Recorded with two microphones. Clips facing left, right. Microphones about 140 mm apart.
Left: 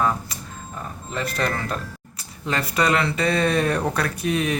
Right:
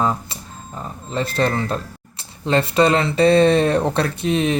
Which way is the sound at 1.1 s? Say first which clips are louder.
Right 5 dB; 30° right (ahead or behind).